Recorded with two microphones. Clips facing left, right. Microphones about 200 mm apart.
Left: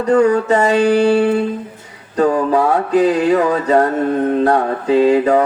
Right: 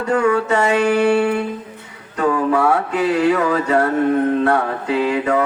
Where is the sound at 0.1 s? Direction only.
35° left (ahead or behind).